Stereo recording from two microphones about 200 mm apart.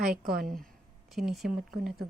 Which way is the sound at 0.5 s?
Centre (ahead or behind).